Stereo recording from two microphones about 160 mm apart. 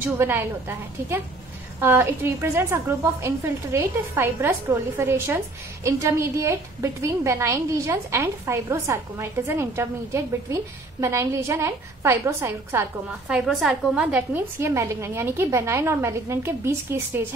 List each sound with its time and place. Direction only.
0.0 s a woman's voice: 15° right (ahead or behind)
13.3 s a woman's voice: 5° right (ahead or behind)